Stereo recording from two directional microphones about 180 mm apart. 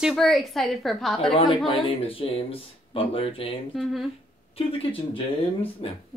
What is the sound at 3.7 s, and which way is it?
Speech, centre (ahead or behind).